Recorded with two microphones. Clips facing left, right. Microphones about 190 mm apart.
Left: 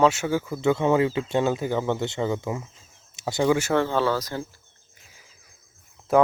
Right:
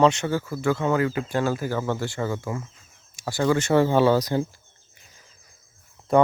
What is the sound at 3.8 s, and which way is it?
Speech, 15° right (ahead or behind).